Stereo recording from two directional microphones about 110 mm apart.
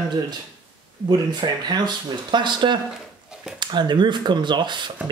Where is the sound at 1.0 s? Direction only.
40° right (ahead or behind).